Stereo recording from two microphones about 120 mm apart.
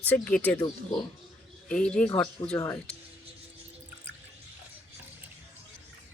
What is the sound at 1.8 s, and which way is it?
Speech, 10° left (ahead or behind).